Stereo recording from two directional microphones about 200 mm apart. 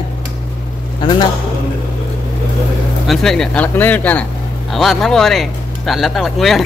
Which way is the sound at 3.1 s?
Centre (ahead or behind).